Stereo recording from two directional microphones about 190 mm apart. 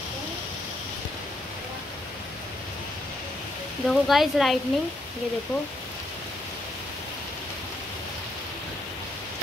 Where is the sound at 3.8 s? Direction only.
Centre (ahead or behind).